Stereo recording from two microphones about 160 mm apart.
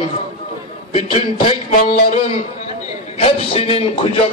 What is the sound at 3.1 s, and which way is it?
Speech, 35° left (ahead or behind).